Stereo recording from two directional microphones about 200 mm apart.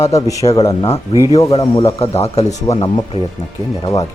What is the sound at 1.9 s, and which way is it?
A man's voice, 30° left (ahead or behind).